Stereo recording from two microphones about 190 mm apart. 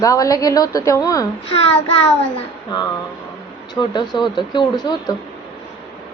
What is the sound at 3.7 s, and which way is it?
Speech, 25° left (ahead or behind).